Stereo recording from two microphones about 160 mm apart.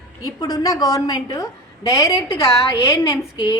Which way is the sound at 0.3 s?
25° left (ahead or behind).